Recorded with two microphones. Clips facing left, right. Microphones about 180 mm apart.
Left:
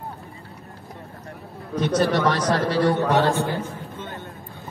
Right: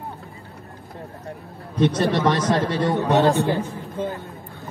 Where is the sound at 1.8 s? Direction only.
25° right (ahead or behind).